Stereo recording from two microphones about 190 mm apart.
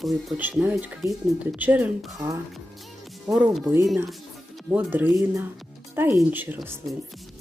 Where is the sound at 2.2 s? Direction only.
15° right (ahead or behind).